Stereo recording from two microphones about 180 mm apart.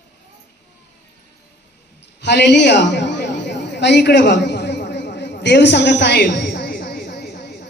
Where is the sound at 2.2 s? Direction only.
70° left (ahead or behind).